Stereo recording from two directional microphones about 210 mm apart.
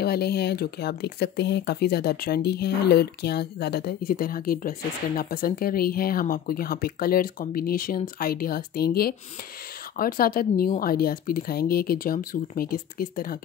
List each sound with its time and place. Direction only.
0.0 s speech: 50° left (ahead or behind)